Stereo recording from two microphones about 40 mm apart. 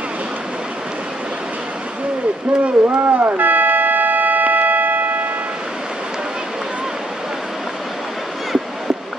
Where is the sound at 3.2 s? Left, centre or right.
Right.